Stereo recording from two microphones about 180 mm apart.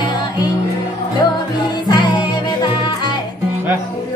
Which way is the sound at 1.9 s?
25° left (ahead or behind).